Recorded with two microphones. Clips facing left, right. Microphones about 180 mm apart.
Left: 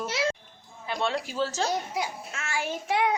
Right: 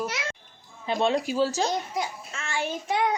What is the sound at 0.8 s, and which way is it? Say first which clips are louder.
Speech: right 5 dB; 20° right (ahead or behind).